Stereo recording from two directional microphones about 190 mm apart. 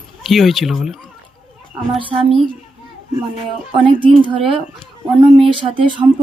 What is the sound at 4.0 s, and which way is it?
A woman's voice, 25° right (ahead or behind).